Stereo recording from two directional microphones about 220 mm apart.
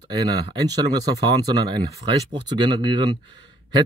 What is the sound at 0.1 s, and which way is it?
A man's voice, 20° right (ahead or behind).